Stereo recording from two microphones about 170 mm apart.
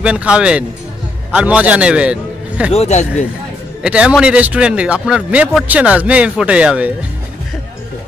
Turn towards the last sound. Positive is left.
turn(degrees=-5)  # may be behind; listen again after turning